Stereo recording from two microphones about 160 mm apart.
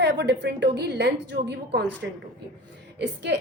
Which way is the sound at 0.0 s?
90° right.